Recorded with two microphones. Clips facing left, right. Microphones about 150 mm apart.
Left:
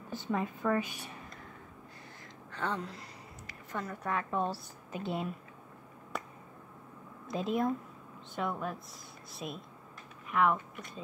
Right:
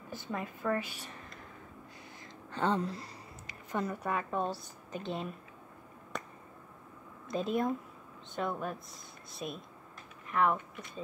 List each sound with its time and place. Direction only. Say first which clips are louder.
0.1 s a woman's voice: left 5 dB; 20° left (ahead or behind)
2.5 s speech: right 5 dB; 30° right (ahead or behind)
3.4 s a woman's voice: right 4 dB; 20° right (ahead or behind); by 5.3 s 5° left (ahead or behind)
6.1 s finger snapping: left 1 dB; 5° left (ahead or behind)
7.2 s a woman's voice: even; centre (ahead or behind)